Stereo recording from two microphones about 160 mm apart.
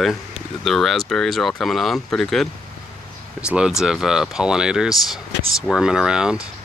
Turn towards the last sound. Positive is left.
turn(degrees=-5)  # may be behind; listen again after turning